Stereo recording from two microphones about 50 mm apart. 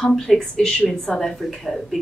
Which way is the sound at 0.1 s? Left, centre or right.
Centre.